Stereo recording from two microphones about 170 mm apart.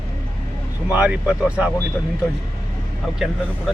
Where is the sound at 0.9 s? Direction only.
5° right (ahead or behind).